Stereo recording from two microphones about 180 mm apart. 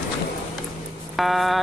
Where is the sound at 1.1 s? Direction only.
Centre (ahead or behind).